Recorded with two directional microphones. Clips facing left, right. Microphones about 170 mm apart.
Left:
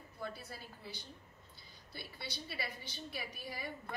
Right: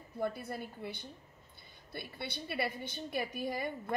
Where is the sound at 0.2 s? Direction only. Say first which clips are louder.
Right 9 dB; 55° right (ahead or behind).